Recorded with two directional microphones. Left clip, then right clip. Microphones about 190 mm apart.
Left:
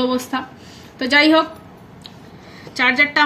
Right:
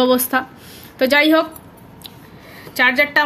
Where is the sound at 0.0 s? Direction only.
45° right (ahead or behind).